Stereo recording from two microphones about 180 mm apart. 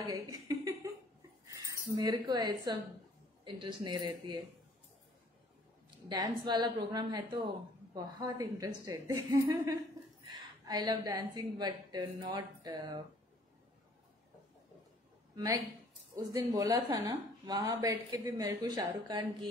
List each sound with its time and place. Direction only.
0.0 s a sound: 20° right (ahead or behind)
1.4 s a woman's voice: 20° right (ahead or behind)
5.9 s a woman's voice: 25° right (ahead or behind)
15.3 s a woman's voice: 20° right (ahead or behind)